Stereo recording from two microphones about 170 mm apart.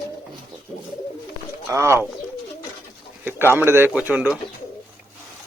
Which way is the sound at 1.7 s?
15° right (ahead or behind).